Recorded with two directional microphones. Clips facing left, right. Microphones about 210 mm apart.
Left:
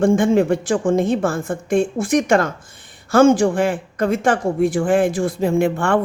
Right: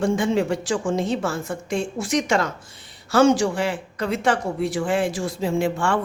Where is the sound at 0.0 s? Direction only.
50° left (ahead or behind).